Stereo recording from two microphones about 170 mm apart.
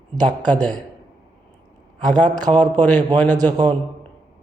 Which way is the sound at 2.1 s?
25° right (ahead or behind).